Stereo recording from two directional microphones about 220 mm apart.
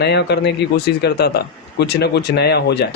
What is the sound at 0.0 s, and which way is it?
A man's voice, 50° left (ahead or behind).